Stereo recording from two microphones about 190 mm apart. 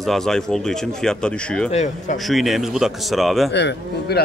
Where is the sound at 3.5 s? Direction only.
65° left (ahead or behind).